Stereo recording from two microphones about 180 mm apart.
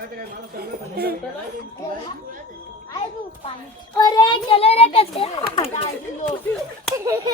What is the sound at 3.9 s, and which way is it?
A child's voice, 20° left (ahead or behind).